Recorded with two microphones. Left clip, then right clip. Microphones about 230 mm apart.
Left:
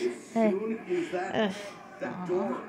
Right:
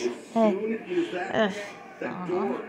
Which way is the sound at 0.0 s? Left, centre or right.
Centre.